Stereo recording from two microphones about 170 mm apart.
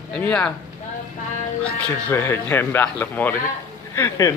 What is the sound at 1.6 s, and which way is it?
Speech, 10° left (ahead or behind).